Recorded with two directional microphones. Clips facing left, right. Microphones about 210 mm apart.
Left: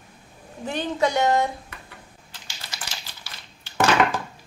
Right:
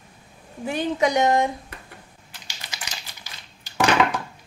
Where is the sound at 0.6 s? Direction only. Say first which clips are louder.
Right 2 dB; 10° right (ahead or behind).